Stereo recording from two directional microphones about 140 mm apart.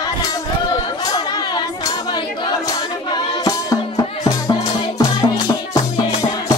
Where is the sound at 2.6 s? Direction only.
25° left (ahead or behind).